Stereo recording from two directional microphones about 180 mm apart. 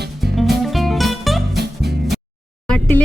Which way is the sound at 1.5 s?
65° right (ahead or behind).